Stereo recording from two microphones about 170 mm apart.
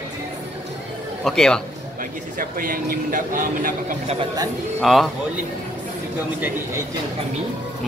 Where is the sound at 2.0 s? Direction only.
55° right (ahead or behind).